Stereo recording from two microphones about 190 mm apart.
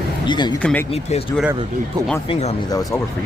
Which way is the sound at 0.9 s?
30° left (ahead or behind).